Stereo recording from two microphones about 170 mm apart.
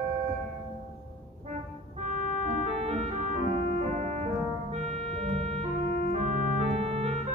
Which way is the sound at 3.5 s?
40° right (ahead or behind).